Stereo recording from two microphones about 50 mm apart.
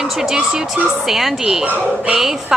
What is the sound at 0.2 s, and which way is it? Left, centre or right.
A woman's voice, centre.